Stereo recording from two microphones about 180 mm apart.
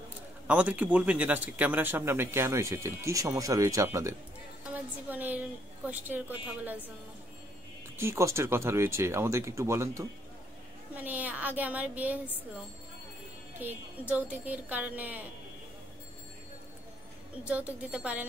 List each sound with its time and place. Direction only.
0.5 s speech: 10° right (ahead or behind)
8.0 s speech: 15° right (ahead or behind)
13.6 s speech: 10° right (ahead or behind)
17.5 s speech: 5° right (ahead or behind)